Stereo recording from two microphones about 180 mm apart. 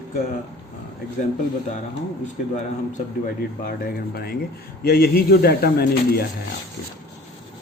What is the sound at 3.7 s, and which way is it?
Speech, 55° left (ahead or behind).